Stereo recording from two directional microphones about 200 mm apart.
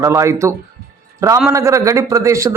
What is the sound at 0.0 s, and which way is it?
Speech, 15° right (ahead or behind).